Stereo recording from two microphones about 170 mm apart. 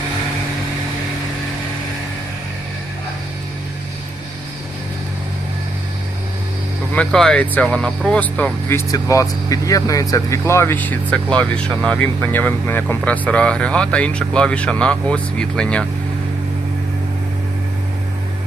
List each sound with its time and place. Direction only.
6.9 s speech: 5° left (ahead or behind)
8.9 s speech: 20° left (ahead or behind)